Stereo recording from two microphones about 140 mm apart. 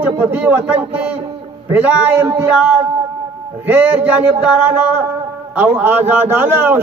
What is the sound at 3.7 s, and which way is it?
A man's voice, 10° right (ahead or behind).